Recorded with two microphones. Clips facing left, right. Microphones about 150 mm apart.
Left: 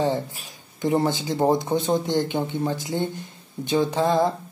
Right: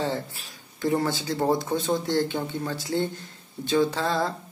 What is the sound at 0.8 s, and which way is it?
Speech, 20° left (ahead or behind).